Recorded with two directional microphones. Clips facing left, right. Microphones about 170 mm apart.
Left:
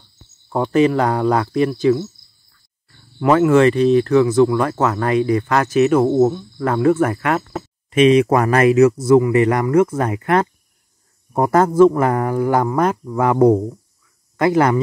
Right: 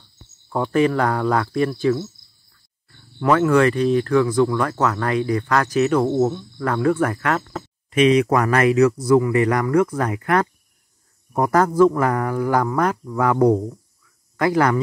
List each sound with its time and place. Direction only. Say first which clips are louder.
0.5 s speech: left 3 dB; 20° left (ahead or behind)
3.3 s speech: left 3 dB; 20° left (ahead or behind)